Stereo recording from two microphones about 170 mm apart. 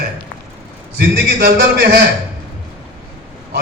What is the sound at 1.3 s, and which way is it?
Speech, 70° right (ahead or behind).